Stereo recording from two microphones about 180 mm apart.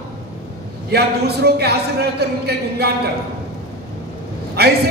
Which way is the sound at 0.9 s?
65° right (ahead or behind).